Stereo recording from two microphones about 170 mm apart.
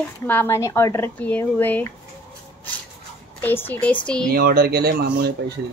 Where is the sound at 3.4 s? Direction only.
10° left (ahead or behind).